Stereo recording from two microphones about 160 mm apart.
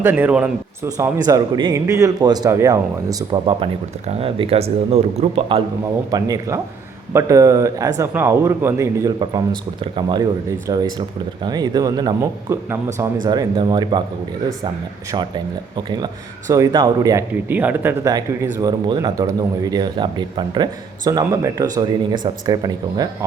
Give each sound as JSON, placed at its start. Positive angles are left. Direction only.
{"t": 0.0, "sound": "speech", "side_deg": -10}
{"t": 0.9, "sound": "speech", "side_deg": -20}
{"t": 3.4, "sound": "speech", "side_deg": -35}
{"t": 6.1, "sound": "speech", "side_deg": -25}
{"t": 9.8, "sound": "speech", "side_deg": -30}
{"t": 16.5, "sound": "speech", "side_deg": -20}
{"t": 17.5, "sound": "speech", "side_deg": -10}
{"t": 18.6, "sound": "speech", "side_deg": -25}